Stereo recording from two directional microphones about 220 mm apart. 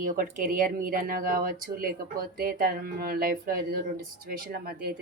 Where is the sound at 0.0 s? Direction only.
40° right (ahead or behind).